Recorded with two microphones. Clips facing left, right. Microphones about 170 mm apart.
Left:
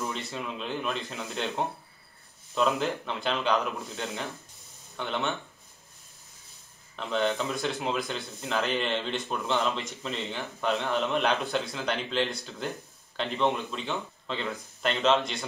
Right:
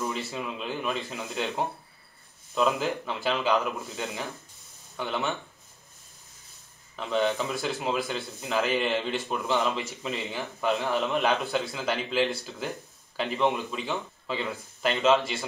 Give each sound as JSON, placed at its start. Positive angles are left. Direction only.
{"t": 0.1, "sound": "a man's voice", "side_deg": -5}
{"t": 7.0, "sound": "a man's voice", "side_deg": 0}